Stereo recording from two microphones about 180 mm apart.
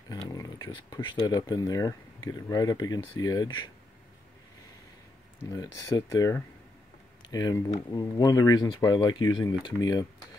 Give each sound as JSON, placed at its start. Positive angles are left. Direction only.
{"t": 0.3, "sound": "speech", "side_deg": 20}
{"t": 5.4, "sound": "speech", "side_deg": 15}